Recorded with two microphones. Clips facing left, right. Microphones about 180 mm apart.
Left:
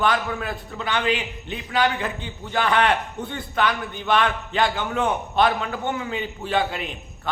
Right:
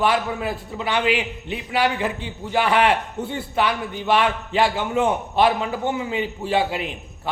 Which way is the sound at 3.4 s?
30° right (ahead or behind).